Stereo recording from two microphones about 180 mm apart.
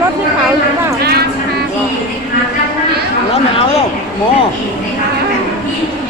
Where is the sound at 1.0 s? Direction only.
60° right (ahead or behind).